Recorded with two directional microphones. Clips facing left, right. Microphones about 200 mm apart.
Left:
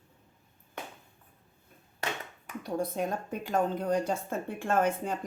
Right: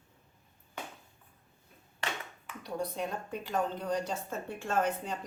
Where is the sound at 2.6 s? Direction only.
50° left (ahead or behind).